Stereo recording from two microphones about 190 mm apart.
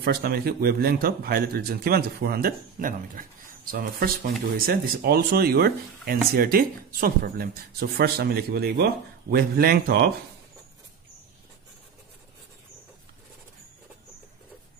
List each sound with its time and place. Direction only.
0.0 s speech: 55° right (ahead or behind)